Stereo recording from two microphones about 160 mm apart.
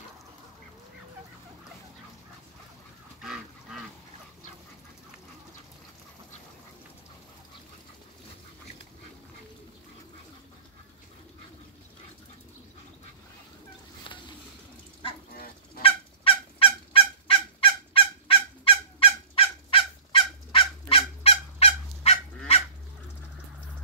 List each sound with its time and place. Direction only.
15.8 s fowl: 35° left (ahead or behind)